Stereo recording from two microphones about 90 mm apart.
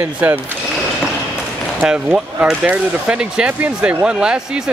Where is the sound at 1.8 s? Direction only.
15° right (ahead or behind).